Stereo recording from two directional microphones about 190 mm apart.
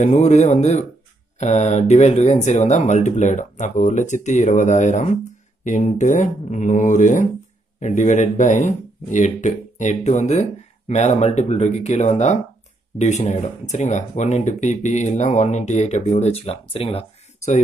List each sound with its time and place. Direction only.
0.0 s speech: 40° left (ahead or behind)